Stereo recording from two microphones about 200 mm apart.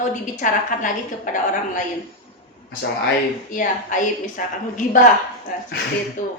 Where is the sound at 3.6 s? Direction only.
40° left (ahead or behind).